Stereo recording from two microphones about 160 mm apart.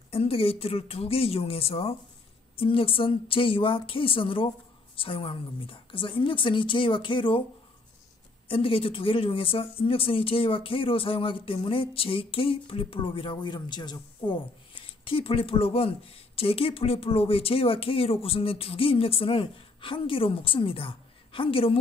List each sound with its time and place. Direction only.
0.1 s speech: 35° left (ahead or behind)
8.5 s speech: 35° left (ahead or behind)